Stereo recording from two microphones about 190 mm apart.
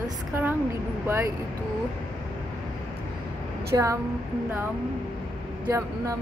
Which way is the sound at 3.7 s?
15° right (ahead or behind).